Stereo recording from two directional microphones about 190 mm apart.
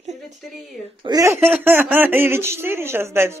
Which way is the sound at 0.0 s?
35° right (ahead or behind).